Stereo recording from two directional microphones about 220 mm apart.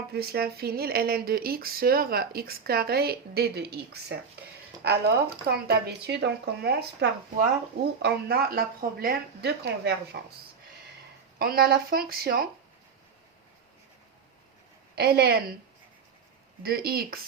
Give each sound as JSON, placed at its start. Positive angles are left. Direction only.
{"t": 0.1, "sound": "speech", "side_deg": -45}
{"t": 11.3, "sound": "speech", "side_deg": -45}
{"t": 14.9, "sound": "speech", "side_deg": -45}
{"t": 16.6, "sound": "speech", "side_deg": -45}